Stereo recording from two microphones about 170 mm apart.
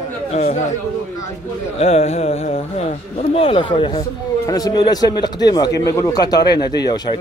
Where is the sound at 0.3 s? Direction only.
40° left (ahead or behind).